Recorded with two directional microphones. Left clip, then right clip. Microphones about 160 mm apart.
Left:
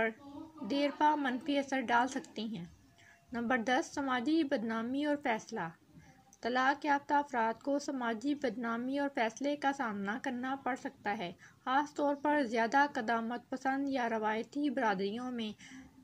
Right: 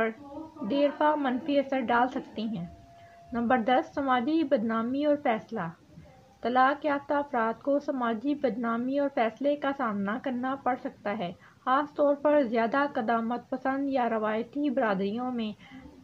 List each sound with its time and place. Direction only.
0.7 s speech: 20° left (ahead or behind)